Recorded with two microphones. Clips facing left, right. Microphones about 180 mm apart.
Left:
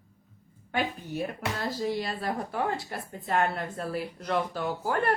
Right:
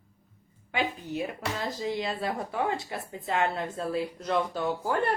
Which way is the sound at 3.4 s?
20° right (ahead or behind).